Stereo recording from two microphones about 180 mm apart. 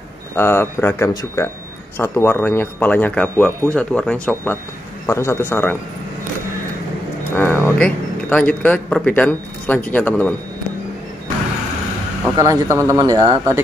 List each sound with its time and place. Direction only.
0.4 s speech: 10° left (ahead or behind)
7.3 s a man's voice: 10° left (ahead or behind)
12.4 s speech: 20° right (ahead or behind)